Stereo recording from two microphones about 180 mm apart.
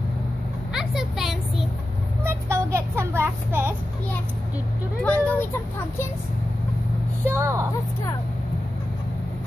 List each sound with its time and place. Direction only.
0.7 s vehicle: centre (ahead or behind)
2.2 s a sound: 15° right (ahead or behind)
5.0 s speech: 10° left (ahead or behind)
7.2 s a woman's voice: 15° right (ahead or behind)